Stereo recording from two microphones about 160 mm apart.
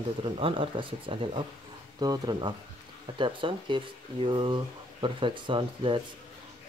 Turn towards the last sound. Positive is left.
turn(degrees=-30)  # may be behind; listen again after turning